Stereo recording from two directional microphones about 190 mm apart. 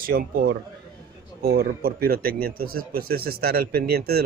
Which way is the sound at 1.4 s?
55° right (ahead or behind).